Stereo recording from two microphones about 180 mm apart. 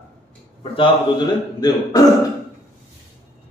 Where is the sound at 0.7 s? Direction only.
25° left (ahead or behind).